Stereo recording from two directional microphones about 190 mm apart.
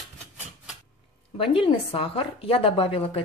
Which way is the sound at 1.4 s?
30° left (ahead or behind).